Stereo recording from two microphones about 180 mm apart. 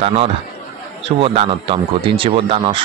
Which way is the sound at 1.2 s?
30° right (ahead or behind).